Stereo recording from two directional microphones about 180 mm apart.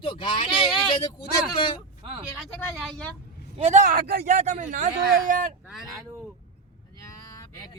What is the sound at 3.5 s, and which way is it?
Speech, 40° right (ahead or behind).